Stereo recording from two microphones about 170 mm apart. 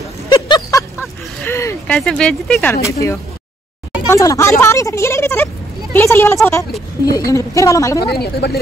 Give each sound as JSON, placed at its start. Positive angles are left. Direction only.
{"t": 0.3, "sound": "a sound", "side_deg": 20}
{"t": 2.0, "sound": "speech", "side_deg": 5}
{"t": 2.7, "sound": "a woman's voice", "side_deg": 15}
{"t": 8.0, "sound": "a woman's voice", "side_deg": 70}